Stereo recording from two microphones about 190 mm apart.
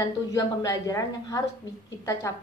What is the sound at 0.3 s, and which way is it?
A woman's voice, 20° left (ahead or behind).